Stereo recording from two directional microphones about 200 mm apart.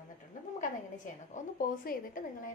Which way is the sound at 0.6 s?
40° left (ahead or behind).